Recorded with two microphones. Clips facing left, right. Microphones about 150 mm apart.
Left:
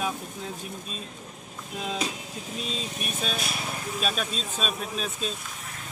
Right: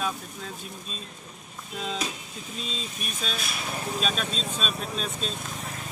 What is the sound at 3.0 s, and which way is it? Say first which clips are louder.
Speech: left 3 dB; 5° left (ahead or behind).